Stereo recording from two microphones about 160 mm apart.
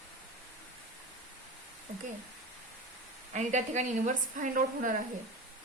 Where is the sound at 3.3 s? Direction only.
50° right (ahead or behind).